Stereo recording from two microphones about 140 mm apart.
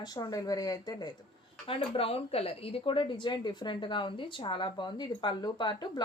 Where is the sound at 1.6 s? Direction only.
45° left (ahead or behind).